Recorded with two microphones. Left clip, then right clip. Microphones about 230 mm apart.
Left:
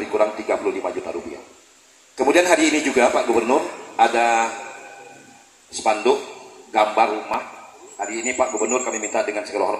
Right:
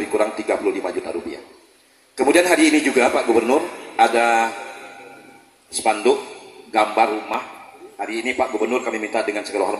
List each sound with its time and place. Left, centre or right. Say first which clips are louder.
0.1 s a man's voice: left 1 dB; right
2.1 s a man's voice: right 1 dB; right
5.7 s a man's voice: right 1 dB; right